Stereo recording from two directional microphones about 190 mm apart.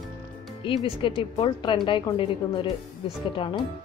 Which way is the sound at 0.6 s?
25° left (ahead or behind).